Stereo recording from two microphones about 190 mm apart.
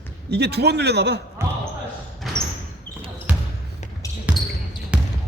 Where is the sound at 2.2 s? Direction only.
Centre (ahead or behind).